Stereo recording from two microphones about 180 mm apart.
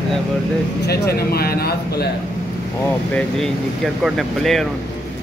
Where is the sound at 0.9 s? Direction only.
60° left (ahead or behind).